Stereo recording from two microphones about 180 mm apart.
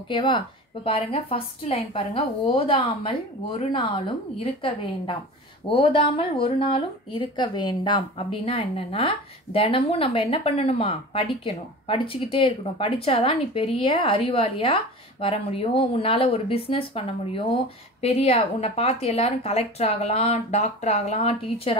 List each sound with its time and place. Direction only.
0.1 s speech: 30° left (ahead or behind)